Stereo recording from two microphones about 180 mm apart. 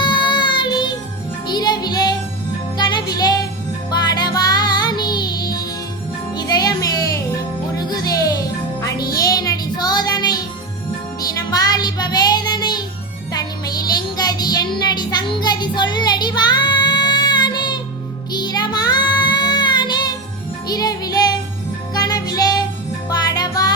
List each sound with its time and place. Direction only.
0.0 s music: 25° left (ahead or behind)
13.3 s child singing: 20° left (ahead or behind)
20.7 s music: 20° left (ahead or behind)